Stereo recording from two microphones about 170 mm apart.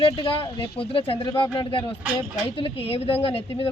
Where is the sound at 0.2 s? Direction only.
30° left (ahead or behind).